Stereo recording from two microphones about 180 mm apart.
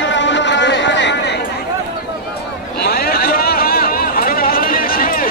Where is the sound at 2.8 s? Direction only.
60° left (ahead or behind).